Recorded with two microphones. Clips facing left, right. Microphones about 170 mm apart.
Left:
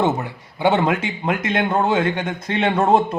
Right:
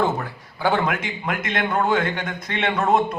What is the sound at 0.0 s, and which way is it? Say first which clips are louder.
A man's voice: left 2 dB; 20° left (ahead or behind).